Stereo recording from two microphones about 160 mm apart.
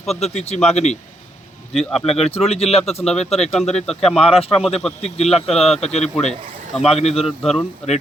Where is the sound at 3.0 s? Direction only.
5° left (ahead or behind).